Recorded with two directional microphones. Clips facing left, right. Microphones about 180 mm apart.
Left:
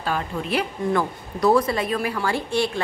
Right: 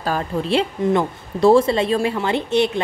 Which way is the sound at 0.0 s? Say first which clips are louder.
Right 4 dB; 35° right (ahead or behind).